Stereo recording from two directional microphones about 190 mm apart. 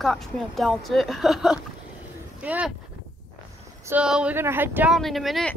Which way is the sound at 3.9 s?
5° right (ahead or behind).